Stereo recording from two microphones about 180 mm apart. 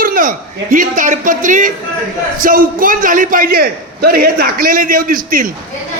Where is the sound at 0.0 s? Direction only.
50° right (ahead or behind).